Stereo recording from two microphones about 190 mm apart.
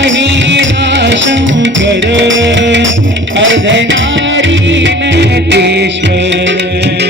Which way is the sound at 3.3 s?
80° right.